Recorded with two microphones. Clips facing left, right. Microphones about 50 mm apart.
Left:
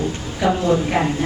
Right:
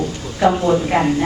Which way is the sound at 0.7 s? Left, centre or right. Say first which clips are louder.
Right 2 dB; centre.